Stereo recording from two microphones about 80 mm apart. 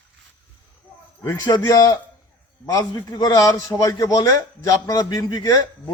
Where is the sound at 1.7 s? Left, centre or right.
Left.